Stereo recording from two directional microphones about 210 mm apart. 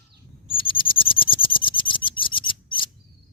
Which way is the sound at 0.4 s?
25° left (ahead or behind).